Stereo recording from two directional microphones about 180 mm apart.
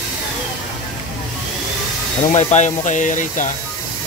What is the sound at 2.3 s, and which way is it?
Speech, 40° left (ahead or behind).